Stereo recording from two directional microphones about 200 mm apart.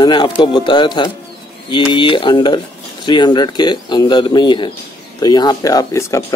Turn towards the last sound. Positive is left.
turn(degrees=15)  # may be behind; listen again after turning